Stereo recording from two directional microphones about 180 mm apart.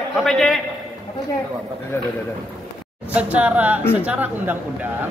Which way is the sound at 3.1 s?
10° right (ahead or behind).